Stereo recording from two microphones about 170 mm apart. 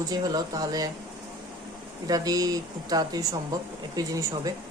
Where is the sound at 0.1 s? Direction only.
20° right (ahead or behind).